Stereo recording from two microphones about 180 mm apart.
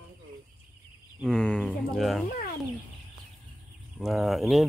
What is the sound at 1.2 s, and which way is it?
Speech, 5° left (ahead or behind).